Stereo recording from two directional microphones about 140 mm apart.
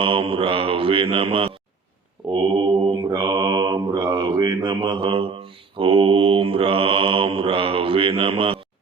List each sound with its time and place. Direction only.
0.0 s mantra: 40° right (ahead or behind)